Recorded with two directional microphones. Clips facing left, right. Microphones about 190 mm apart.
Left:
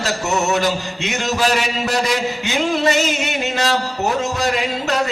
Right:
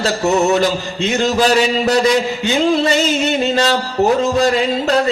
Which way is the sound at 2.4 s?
35° right (ahead or behind).